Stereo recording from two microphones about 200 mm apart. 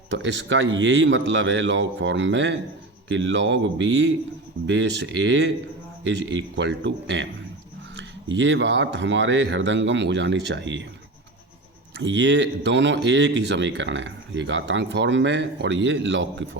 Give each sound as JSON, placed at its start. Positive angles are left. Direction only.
{"t": 0.1, "sound": "speech", "side_deg": -65}
{"t": 11.9, "sound": "speech", "side_deg": -65}